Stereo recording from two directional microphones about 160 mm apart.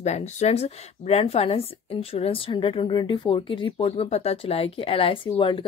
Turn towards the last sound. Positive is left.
turn(degrees=35)  # may be behind; listen again after turning